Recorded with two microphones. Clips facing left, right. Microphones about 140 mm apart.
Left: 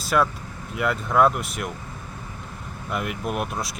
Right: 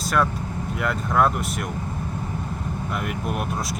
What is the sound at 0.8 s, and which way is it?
Speech, centre (ahead or behind).